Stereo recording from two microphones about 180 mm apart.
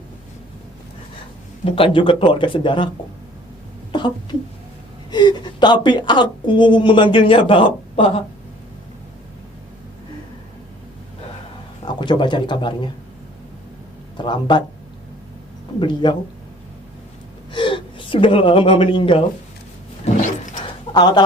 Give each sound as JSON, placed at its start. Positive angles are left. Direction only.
{"t": 1.7, "sound": "a woman's voice", "side_deg": 30}
{"t": 3.9, "sound": "a woman's voice", "side_deg": 25}
{"t": 11.9, "sound": "a woman's voice", "side_deg": 25}
{"t": 14.2, "sound": "a woman's voice", "side_deg": 25}
{"t": 15.8, "sound": "a woman's voice", "side_deg": 25}
{"t": 17.5, "sound": "a woman's voice", "side_deg": 25}
{"t": 20.9, "sound": "a woman's voice", "side_deg": 25}